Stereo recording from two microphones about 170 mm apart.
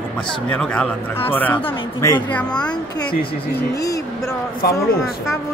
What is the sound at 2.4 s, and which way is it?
Speech, 5° left (ahead or behind).